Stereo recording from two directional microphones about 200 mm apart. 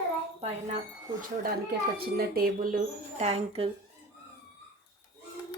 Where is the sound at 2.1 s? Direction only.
50° right (ahead or behind); by 3.7 s 30° right (ahead or behind).